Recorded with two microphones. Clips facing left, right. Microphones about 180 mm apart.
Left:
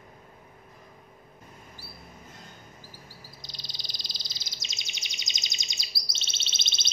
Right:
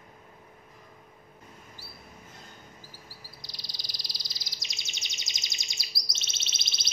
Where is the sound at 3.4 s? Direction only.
25° left (ahead or behind).